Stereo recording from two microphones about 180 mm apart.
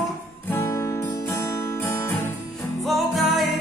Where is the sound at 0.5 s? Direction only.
15° left (ahead or behind).